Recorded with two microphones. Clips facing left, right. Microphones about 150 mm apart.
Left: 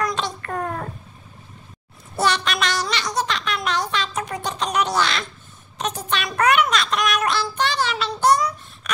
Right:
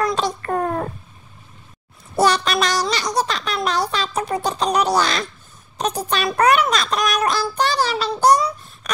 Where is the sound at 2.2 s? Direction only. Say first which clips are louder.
Right 4 dB; 40° right (ahead or behind).